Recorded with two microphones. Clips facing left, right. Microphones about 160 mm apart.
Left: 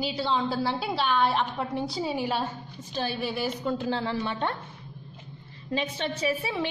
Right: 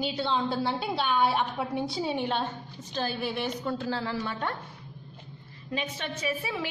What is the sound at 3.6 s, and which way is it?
Speech, 20° left (ahead or behind).